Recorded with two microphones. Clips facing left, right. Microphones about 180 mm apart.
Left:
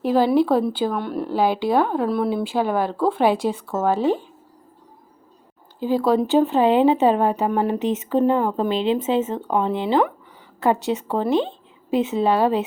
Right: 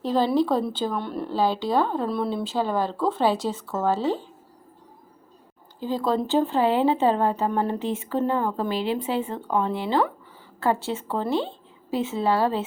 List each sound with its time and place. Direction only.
0.0 s a woman's voice: 10° left (ahead or behind)
1.3 s a woman's voice: 15° left (ahead or behind)
6.1 s a woman's voice: 15° left (ahead or behind)